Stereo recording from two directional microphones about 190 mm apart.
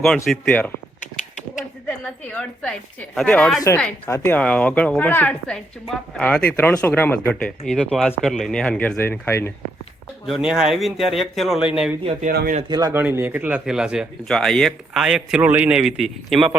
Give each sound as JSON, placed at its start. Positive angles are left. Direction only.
{"t": 0.3, "sound": "speech", "side_deg": 5}
{"t": 1.9, "sound": "a woman's voice", "side_deg": 5}
{"t": 10.2, "sound": "speech", "side_deg": -5}
{"t": 12.3, "sound": "speech", "side_deg": -55}
{"t": 12.6, "sound": "speech", "side_deg": -20}